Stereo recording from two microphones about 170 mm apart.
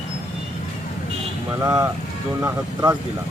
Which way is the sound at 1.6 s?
20° right (ahead or behind).